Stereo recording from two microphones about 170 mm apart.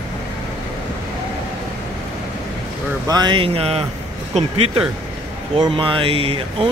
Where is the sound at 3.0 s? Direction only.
25° right (ahead or behind).